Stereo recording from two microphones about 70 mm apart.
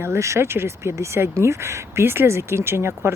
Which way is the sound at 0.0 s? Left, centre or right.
Right.